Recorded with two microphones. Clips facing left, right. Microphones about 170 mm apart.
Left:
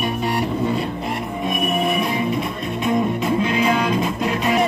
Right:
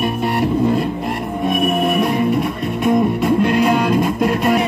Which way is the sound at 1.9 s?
55° right (ahead or behind).